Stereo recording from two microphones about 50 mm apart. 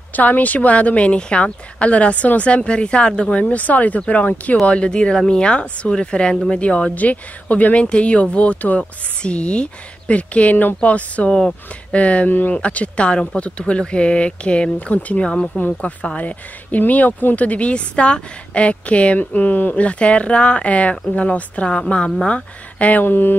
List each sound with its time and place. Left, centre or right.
0.1 s a woman's voice: left
11.2 s speech: centre
11.9 s a woman's voice: left
12.3 s speech: left
12.5 s a woman's voice: left
15.8 s a woman's voice: left
23.0 s mantra: left